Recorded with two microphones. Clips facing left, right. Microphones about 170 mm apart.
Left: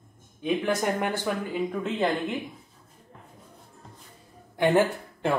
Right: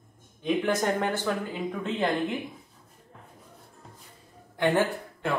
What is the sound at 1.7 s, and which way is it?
Speech, centre (ahead or behind).